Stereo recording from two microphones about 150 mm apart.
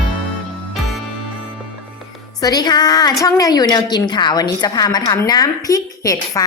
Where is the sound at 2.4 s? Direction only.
25° left (ahead or behind).